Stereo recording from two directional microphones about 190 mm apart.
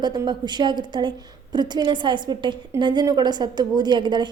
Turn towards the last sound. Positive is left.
turn(degrees=-25)  # may be behind; listen again after turning